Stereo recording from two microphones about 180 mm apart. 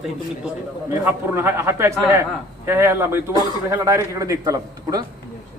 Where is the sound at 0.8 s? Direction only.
15° right (ahead or behind).